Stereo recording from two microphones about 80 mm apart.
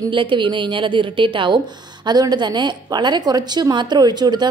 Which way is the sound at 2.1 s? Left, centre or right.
Right.